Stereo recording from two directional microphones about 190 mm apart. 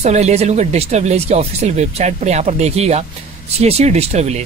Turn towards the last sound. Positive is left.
turn(degrees=-35)  # may be behind; listen again after turning